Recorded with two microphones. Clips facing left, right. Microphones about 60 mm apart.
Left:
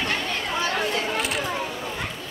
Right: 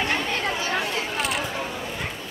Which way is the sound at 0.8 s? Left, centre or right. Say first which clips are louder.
Left 2 dB; left.